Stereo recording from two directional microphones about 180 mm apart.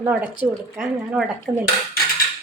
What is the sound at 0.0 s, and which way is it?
Speech, 10° right (ahead or behind).